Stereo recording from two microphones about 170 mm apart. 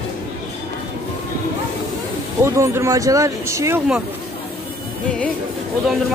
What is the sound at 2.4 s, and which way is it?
Speech, 15° right (ahead or behind).